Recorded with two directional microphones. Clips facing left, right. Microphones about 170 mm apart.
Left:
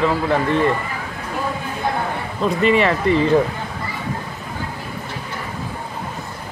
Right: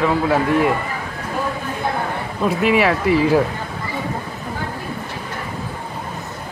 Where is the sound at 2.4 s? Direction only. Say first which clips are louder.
Even; 5° right (ahead or behind).